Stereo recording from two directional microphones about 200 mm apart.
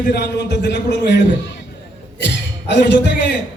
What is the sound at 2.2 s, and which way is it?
Speech, 60° left (ahead or behind).